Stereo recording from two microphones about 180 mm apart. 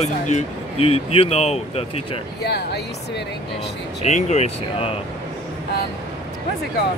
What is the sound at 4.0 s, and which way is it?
Speech, 40° left (ahead or behind).